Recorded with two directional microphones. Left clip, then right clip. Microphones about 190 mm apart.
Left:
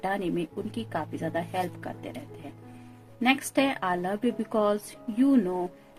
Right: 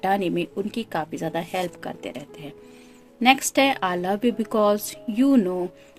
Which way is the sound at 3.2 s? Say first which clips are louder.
Right 7 dB; 45° right (ahead or behind).